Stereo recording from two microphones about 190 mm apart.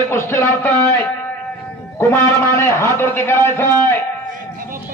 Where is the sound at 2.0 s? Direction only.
10° left (ahead or behind).